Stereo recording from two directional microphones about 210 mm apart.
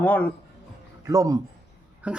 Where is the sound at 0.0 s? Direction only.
5° left (ahead or behind).